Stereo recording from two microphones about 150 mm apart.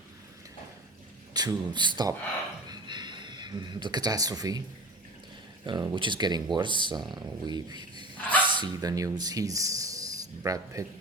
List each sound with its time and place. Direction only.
1.3 s speech: 25° right (ahead or behind)
2.6 s a sound: 30° right (ahead or behind)
5.6 s speech: 30° right (ahead or behind)